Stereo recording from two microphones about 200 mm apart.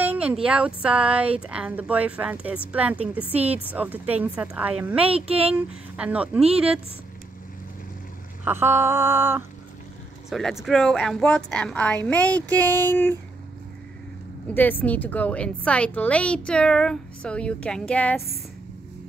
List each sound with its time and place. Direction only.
0.0 s speech: 5° right (ahead or behind)
5.0 s speech: 30° right (ahead or behind)
5.5 s a woman's voice: 5° right (ahead or behind)
8.5 s speech: 10° right (ahead or behind)
10.3 s a woman's voice: centre (ahead or behind)
14.5 s a woman's voice: 10° left (ahead or behind)